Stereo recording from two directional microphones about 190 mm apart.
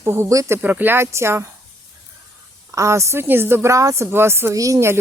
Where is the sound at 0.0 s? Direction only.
15° right (ahead or behind).